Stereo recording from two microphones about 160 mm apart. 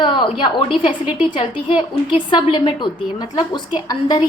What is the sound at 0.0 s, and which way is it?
A woman's voice, 30° left (ahead or behind).